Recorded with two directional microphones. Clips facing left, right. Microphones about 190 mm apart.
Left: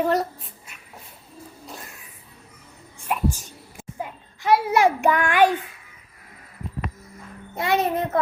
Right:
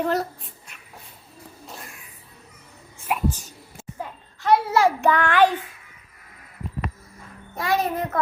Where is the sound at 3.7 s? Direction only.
10° left (ahead or behind).